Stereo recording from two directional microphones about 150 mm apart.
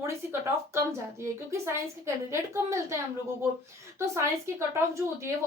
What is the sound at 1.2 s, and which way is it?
A woman's voice, 20° right (ahead or behind).